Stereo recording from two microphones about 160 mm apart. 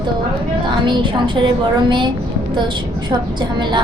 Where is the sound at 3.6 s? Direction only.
30° right (ahead or behind).